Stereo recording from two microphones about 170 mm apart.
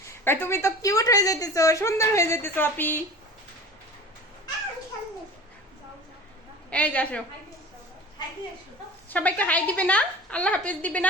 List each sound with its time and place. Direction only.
0.3 s a woman's voice: 15° left (ahead or behind)
6.7 s a woman's voice: 10° left (ahead or behind)
9.0 s a woman's voice: 10° left (ahead or behind)